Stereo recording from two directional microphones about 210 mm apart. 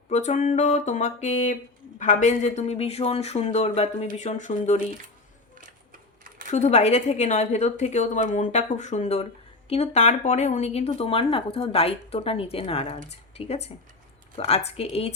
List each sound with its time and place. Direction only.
0.1 s speech: 35° left (ahead or behind)
6.5 s speech: 35° left (ahead or behind)